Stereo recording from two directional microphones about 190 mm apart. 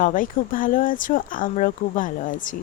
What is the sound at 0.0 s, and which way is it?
A woman's voice, 45° left (ahead or behind).